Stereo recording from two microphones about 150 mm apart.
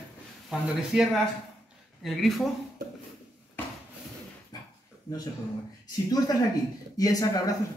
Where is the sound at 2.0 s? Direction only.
Centre (ahead or behind).